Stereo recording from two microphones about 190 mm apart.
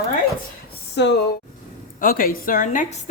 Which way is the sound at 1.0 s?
65° left (ahead or behind).